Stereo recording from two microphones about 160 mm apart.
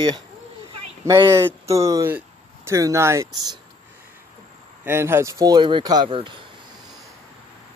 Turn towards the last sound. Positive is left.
turn(degrees=-30)  # may be behind; listen again after turning